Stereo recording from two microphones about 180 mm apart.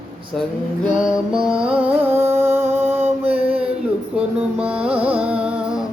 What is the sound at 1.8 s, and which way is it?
Music, 10° right (ahead or behind).